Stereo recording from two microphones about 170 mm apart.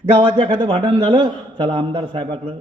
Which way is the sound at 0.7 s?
30° right (ahead or behind).